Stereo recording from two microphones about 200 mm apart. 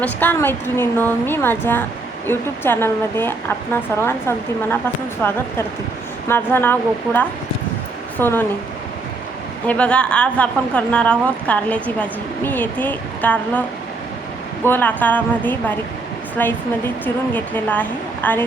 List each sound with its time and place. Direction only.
0.0 s a woman's voice: 10° left (ahead or behind)
9.6 s a woman's voice: 5° left (ahead or behind)